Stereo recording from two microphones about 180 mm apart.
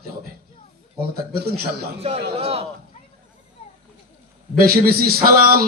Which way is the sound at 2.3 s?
35° right (ahead or behind).